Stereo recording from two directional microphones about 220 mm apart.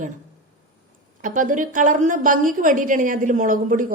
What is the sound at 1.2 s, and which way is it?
A woman's voice, 35° right (ahead or behind).